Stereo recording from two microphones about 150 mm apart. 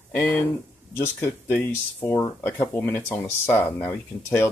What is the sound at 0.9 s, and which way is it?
Speech, 15° left (ahead or behind).